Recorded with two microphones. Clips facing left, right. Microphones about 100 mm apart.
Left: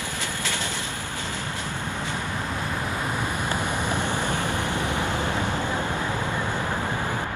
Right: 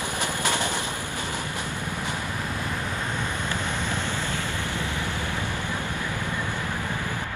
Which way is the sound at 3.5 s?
15° left (ahead or behind).